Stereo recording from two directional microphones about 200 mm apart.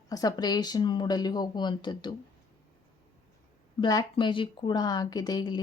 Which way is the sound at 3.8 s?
20° left (ahead or behind).